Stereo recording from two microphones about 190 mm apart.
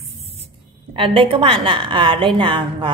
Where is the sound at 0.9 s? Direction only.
30° right (ahead or behind).